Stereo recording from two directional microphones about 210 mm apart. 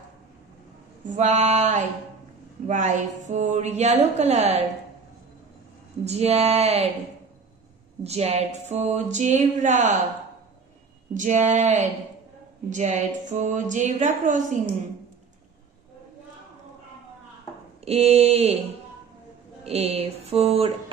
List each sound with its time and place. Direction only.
1.0 s speech: 35° right (ahead or behind)
6.0 s speech: 30° right (ahead or behind)
8.0 s speech: 30° right (ahead or behind)
11.1 s speech: 35° right (ahead or behind)
17.8 s a sound: 30° right (ahead or behind)